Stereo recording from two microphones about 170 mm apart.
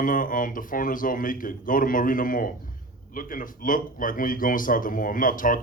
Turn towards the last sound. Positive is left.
turn(degrees=55)  # may be behind; listen again after turning